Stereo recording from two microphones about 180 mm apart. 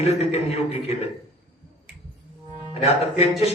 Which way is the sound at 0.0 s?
35° left (ahead or behind).